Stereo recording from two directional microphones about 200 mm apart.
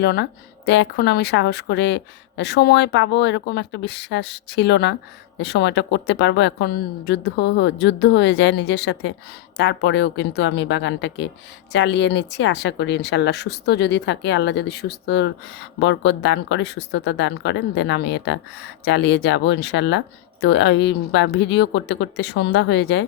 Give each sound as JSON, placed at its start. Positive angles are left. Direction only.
{"t": 0.0, "sound": "speech", "side_deg": 55}